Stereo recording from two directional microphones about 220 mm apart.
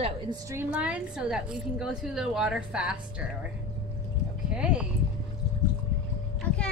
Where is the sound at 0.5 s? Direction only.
10° right (ahead or behind).